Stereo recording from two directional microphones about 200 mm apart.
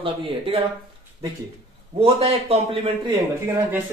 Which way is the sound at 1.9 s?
30° right (ahead or behind).